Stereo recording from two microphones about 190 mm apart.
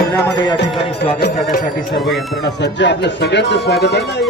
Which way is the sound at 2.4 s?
70° left (ahead or behind).